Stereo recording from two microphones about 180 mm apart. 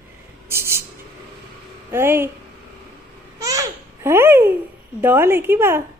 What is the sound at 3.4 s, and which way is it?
Babbling, 20° right (ahead or behind).